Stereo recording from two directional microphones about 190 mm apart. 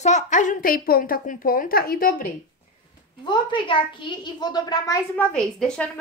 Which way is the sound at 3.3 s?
25° left (ahead or behind).